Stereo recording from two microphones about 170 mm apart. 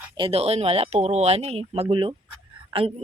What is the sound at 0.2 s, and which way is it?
A woman's voice, 35° right (ahead or behind).